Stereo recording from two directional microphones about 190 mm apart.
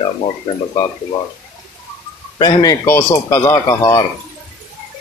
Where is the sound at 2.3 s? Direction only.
25° left (ahead or behind).